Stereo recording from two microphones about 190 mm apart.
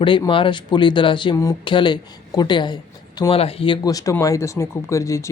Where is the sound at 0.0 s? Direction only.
25° left (ahead or behind).